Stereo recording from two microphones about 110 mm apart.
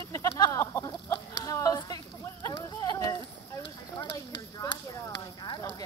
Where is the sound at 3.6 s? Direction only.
40° left (ahead or behind).